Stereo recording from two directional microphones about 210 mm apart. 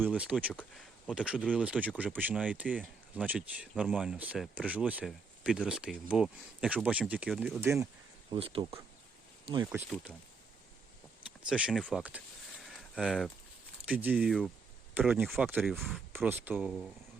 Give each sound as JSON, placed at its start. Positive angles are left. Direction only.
{"t": 0.0, "sound": "speech", "side_deg": -5}
{"t": 8.3, "sound": "speech", "side_deg": -25}
{"t": 9.7, "sound": "speech", "side_deg": -5}
{"t": 11.4, "sound": "speech", "side_deg": -5}
{"t": 12.6, "sound": "a sound", "side_deg": 0}
{"t": 13.8, "sound": "speech", "side_deg": -5}